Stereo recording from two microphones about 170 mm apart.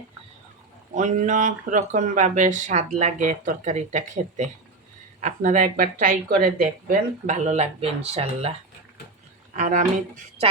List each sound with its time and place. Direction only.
0.9 s speech: 45° right (ahead or behind)
9.6 s speech: 50° right (ahead or behind)